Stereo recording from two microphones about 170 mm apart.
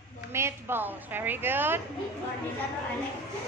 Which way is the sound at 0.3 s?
15° right (ahead or behind).